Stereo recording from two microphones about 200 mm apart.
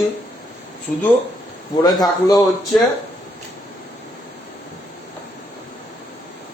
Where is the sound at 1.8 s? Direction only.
20° left (ahead or behind).